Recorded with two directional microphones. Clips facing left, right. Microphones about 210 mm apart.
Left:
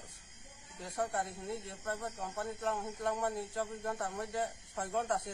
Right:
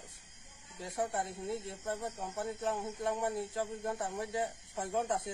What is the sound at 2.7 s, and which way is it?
Speech, 25° right (ahead or behind).